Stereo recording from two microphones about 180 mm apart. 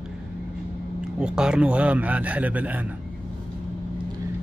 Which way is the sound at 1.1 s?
5° right (ahead or behind).